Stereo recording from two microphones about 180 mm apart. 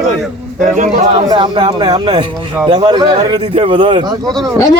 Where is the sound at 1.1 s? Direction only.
25° right (ahead or behind).